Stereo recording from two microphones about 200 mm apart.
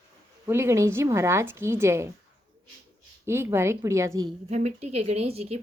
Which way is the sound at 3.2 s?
10° right (ahead or behind).